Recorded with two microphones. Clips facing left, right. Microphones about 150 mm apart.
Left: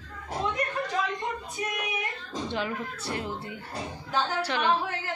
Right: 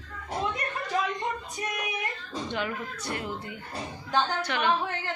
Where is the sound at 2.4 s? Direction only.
30° left (ahead or behind).